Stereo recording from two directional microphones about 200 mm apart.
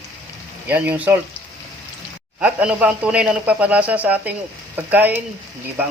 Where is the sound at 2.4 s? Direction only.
5° right (ahead or behind).